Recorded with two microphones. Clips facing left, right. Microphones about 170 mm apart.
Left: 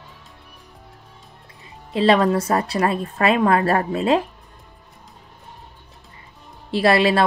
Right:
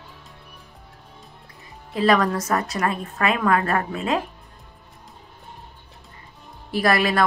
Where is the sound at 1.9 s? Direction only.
25° left (ahead or behind).